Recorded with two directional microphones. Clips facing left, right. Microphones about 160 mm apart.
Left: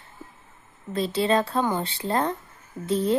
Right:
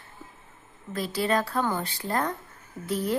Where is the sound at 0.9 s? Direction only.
25° left (ahead or behind).